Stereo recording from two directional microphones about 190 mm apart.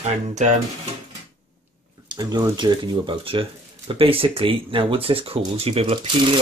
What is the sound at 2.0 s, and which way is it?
Speech, 20° right (ahead or behind).